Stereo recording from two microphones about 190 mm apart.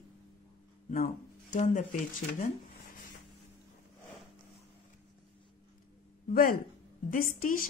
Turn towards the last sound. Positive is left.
turn(degrees=45)  # may be behind; listen again after turning